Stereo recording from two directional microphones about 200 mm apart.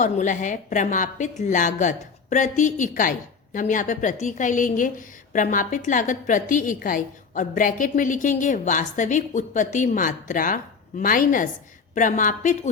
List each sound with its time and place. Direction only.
0.0 s a woman's voice: 40° left (ahead or behind)